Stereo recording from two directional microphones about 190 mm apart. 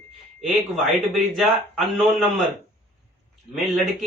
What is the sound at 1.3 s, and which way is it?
Speech, centre (ahead or behind).